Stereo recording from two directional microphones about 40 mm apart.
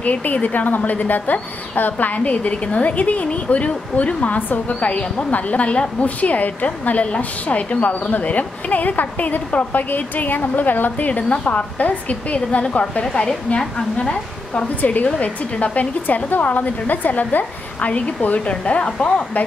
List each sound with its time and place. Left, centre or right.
0.0 s a woman's voice: left
11.1 s a woman's voice: left
12.4 s a woman's voice: left
13.0 s a woman's voice: centre
13.9 s a woman's voice: left
14.8 s a woman's voice: left
17.7 s a woman's voice: left